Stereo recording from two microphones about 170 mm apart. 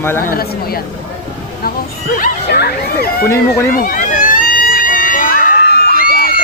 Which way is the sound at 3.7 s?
55° left (ahead or behind).